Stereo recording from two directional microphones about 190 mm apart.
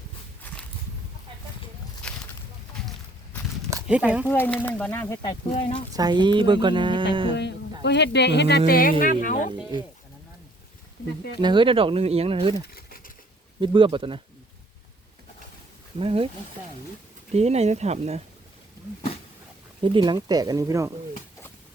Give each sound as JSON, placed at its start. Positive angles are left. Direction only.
{"t": 2.0, "sound": "a sound", "side_deg": 5}
{"t": 3.8, "sound": "speech", "side_deg": -5}
{"t": 4.3, "sound": "speech", "side_deg": 10}
{"t": 5.9, "sound": "speech", "side_deg": -20}
{"t": 7.8, "sound": "speech", "side_deg": 65}
{"t": 11.3, "sound": "speech", "side_deg": -25}
{"t": 12.6, "sound": "a sound", "side_deg": 55}
{"t": 13.6, "sound": "speech", "side_deg": -25}
{"t": 16.0, "sound": "speech", "side_deg": -30}
{"t": 17.3, "sound": "speech", "side_deg": -35}
{"t": 19.8, "sound": "speech", "side_deg": -25}